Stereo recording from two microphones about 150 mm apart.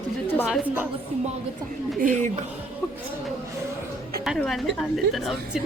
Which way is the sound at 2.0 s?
60° right (ahead or behind).